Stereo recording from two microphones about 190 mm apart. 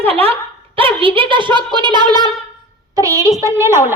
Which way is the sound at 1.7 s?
25° right (ahead or behind).